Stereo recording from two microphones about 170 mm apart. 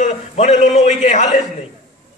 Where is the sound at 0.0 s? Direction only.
45° left (ahead or behind).